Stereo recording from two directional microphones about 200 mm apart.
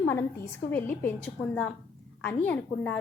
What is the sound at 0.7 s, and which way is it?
A woman's voice, 10° left (ahead or behind).